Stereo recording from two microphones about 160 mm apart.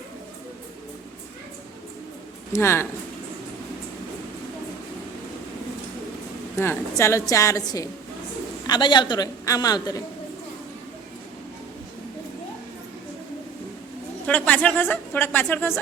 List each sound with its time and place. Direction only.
2.5 s speech: 15° left (ahead or behind)
6.6 s a woman's voice: 15° left (ahead or behind)
14.3 s speech: 10° left (ahead or behind)